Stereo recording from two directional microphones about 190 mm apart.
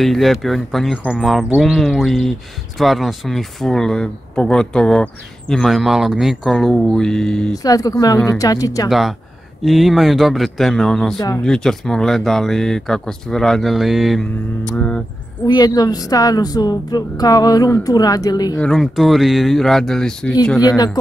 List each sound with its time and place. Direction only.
0.0 s speech: centre (ahead or behind)
7.5 s speech: 20° left (ahead or behind)
9.7 s speech: centre (ahead or behind)
11.1 s speech: 20° left (ahead or behind)
11.4 s speech: 5° left (ahead or behind)
15.4 s speech: 20° left (ahead or behind)
18.6 s speech: centre (ahead or behind)
20.6 s speech: 20° left (ahead or behind)